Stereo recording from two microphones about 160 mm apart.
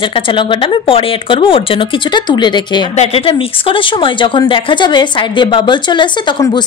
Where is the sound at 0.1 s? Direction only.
30° left (ahead or behind).